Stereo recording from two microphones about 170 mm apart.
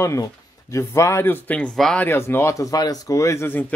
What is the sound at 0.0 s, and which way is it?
Speech, 15° left (ahead or behind).